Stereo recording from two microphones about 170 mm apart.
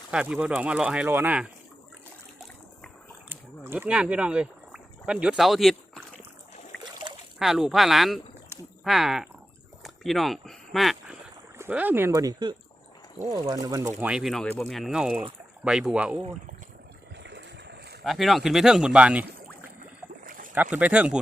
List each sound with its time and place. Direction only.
0.1 s speech: 5° right (ahead or behind)
3.2 s speech: 10° right (ahead or behind)
7.3 s speech: centre (ahead or behind)
9.8 s a sound: centre (ahead or behind)
11.5 s speech: 10° right (ahead or behind)
14.0 s speech: 5° right (ahead or behind)
17.2 s boat: 90° right
18.0 s speech: centre (ahead or behind)
20.2 s rowboat: 55° right (ahead or behind)
20.6 s speech: 10° right (ahead or behind)